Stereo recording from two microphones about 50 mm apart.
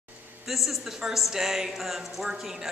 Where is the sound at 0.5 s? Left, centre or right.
Centre.